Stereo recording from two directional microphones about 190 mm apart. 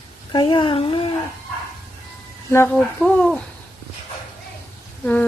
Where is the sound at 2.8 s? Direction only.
Centre (ahead or behind).